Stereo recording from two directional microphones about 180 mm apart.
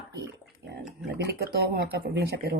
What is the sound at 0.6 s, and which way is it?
Pig, 65° right (ahead or behind).